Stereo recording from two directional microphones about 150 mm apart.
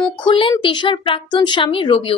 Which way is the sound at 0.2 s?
35° left (ahead or behind).